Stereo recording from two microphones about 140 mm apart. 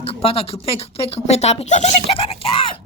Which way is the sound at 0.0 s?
45° left (ahead or behind).